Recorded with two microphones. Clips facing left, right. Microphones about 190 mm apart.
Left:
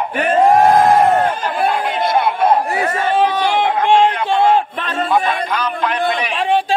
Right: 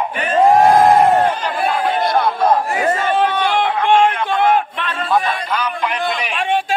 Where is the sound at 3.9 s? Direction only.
30° left (ahead or behind).